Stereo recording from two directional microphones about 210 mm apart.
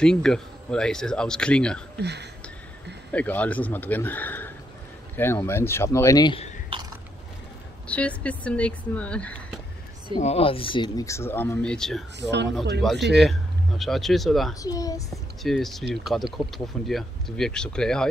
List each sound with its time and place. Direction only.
0.0 s speech: 5° left (ahead or behind)
2.0 s speech: 55° right (ahead or behind)
3.1 s speech: 5° left (ahead or behind)
7.9 s speech: 5° left (ahead or behind)
10.2 s speech: 30° left (ahead or behind); by 12.0 s 5° left (ahead or behind)
12.2 s speech: 55° right (ahead or behind)
13.2 s speech: centre (ahead or behind)
14.5 s speech: 15° left (ahead or behind)
15.4 s speech: centre (ahead or behind)